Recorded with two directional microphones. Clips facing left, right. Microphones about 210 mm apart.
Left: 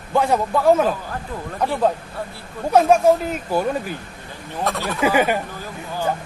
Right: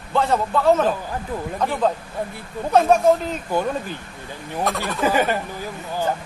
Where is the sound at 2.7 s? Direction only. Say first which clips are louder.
Left 1 dB; 10° left (ahead or behind).